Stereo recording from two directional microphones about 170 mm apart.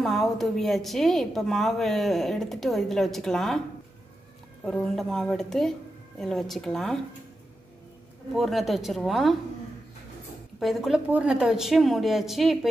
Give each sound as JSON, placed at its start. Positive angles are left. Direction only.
{"t": 0.0, "sound": "a woman's voice", "side_deg": 0}
{"t": 4.6, "sound": "a woman's voice", "side_deg": 5}
{"t": 8.4, "sound": "a woman's voice", "side_deg": 0}
{"t": 10.6, "sound": "a woman's voice", "side_deg": 0}